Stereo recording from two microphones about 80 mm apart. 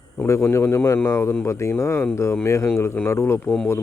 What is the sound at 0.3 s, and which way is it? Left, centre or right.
Speech, left.